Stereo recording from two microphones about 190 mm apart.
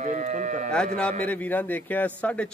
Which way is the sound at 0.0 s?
40° right (ahead or behind).